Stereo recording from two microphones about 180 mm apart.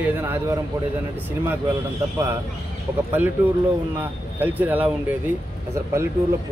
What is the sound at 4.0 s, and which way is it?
Speech, 10° right (ahead or behind).